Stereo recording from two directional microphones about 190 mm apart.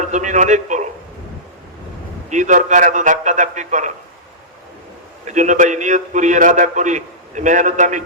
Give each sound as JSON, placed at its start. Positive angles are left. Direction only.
{"t": 0.1, "sound": "a man's voice", "side_deg": -40}
{"t": 2.3, "sound": "a man's voice", "side_deg": -40}
{"t": 5.3, "sound": "a man's voice", "side_deg": -40}